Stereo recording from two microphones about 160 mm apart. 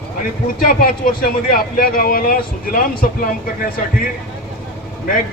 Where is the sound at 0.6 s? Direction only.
65° left (ahead or behind).